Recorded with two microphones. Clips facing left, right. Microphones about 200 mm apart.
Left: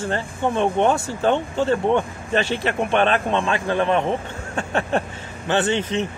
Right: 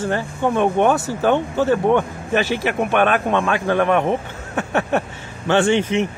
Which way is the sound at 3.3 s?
20° left (ahead or behind).